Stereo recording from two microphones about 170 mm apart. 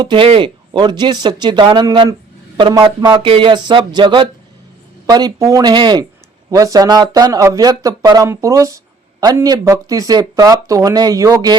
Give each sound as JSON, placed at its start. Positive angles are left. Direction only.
{"t": 0.0, "sound": "speech", "side_deg": -30}